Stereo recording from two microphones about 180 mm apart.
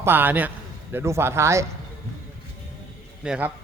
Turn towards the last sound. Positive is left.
turn(degrees=-5)  # may be behind; listen again after turning